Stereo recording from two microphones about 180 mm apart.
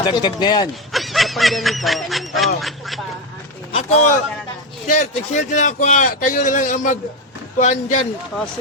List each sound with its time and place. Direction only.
0.0 s speech: 25° left (ahead or behind)
0.9 s speech: centre (ahead or behind)
3.7 s a man's voice: 35° left (ahead or behind)